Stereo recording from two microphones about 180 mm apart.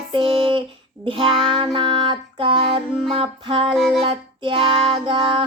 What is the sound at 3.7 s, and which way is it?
Speech, centre (ahead or behind).